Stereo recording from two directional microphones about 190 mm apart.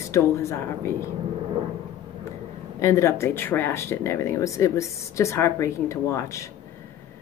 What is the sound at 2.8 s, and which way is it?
Speech, 15° left (ahead or behind).